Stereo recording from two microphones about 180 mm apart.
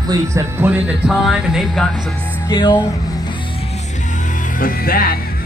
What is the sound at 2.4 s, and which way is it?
Speech, 25° left (ahead or behind).